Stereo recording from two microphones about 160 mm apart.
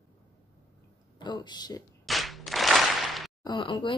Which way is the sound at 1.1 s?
30° left (ahead or behind).